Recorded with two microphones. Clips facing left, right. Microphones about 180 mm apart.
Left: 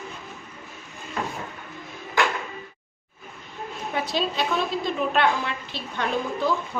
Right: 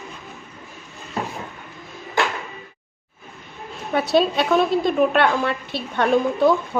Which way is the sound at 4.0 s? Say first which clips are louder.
Right 8 dB; 65° right (ahead or behind).